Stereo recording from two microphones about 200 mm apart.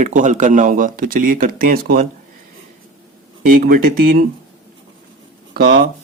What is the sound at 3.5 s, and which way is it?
Speech, 45° right (ahead or behind).